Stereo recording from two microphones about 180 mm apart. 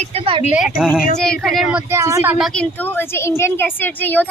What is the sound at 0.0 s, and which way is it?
Speech, 35° right (ahead or behind).